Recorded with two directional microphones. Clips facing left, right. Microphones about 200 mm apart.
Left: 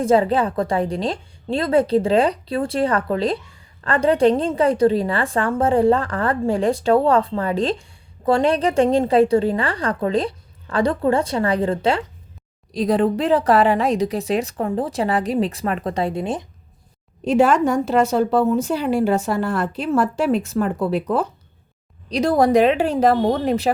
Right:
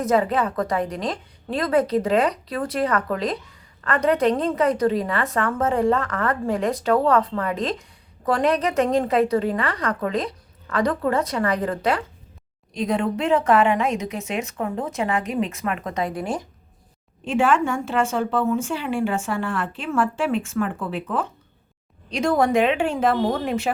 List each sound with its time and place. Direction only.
0.0 s a woman's voice: 30° left (ahead or behind)
17.2 s a woman's voice: 40° left (ahead or behind)